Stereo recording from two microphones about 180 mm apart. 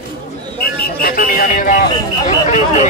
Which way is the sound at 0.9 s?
55° left (ahead or behind).